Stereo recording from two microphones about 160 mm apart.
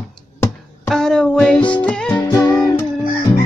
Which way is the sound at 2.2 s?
25° left (ahead or behind).